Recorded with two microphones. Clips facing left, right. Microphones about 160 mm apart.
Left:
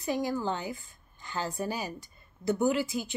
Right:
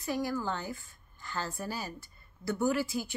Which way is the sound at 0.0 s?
20° left (ahead or behind).